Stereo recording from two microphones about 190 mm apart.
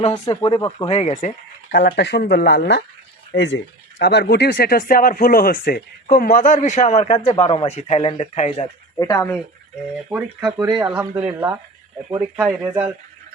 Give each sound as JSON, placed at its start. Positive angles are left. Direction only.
{"t": 0.0, "sound": "speech", "side_deg": 25}
{"t": 0.9, "sound": "speech", "side_deg": 35}
{"t": 1.7, "sound": "speech", "side_deg": 60}
{"t": 9.0, "sound": "speech", "side_deg": 15}
{"t": 10.1, "sound": "speech", "side_deg": -10}
{"t": 10.7, "sound": "speech", "side_deg": -25}
{"t": 11.3, "sound": "speech", "side_deg": -10}